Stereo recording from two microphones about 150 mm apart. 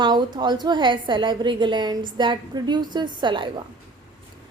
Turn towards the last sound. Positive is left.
turn(degrees=-30)  # may be behind; listen again after turning